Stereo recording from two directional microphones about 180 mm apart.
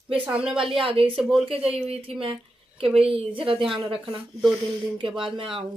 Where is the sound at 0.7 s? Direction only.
30° right (ahead or behind).